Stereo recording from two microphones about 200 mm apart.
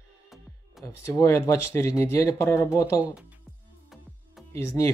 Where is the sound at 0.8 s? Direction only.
15° left (ahead or behind).